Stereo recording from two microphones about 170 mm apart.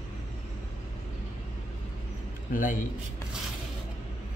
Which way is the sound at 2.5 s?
55° left (ahead or behind).